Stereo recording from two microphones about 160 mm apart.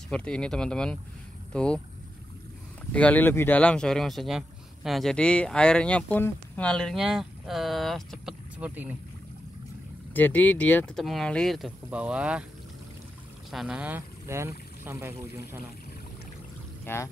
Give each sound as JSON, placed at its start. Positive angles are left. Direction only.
{"t": 0.1, "sound": "speech", "side_deg": 5}
{"t": 2.9, "sound": "speech", "side_deg": 10}
{"t": 10.1, "sound": "speech", "side_deg": 10}
{"t": 13.5, "sound": "speech", "side_deg": -5}
{"t": 16.8, "sound": "speech", "side_deg": 15}